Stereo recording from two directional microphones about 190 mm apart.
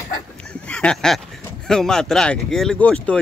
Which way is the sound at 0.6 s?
5° left (ahead or behind).